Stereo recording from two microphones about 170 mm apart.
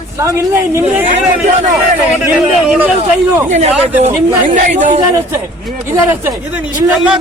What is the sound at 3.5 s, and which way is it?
A man's voice, 40° right (ahead or behind).